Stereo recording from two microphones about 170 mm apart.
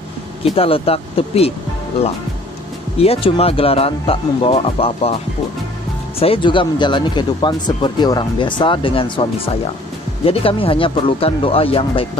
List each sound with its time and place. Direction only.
0.6 s speech: 35° left (ahead or behind)
3.0 s speech: 35° left (ahead or behind)
6.1 s a man's voice: 35° left (ahead or behind)